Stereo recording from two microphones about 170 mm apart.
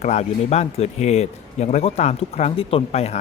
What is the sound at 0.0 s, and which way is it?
A man's voice, 40° left (ahead or behind).